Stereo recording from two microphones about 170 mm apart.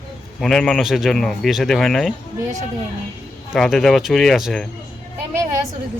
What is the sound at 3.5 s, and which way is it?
Speech, centre (ahead or behind).